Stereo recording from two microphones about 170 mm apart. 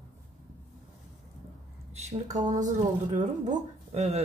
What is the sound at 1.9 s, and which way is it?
Speech, 40° right (ahead or behind).